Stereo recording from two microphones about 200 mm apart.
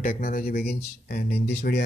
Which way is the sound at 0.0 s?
45° left (ahead or behind).